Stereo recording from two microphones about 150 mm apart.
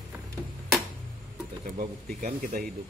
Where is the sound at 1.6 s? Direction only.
65° right (ahead or behind).